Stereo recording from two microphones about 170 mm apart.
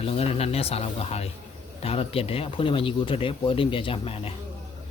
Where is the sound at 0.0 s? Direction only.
35° left (ahead or behind).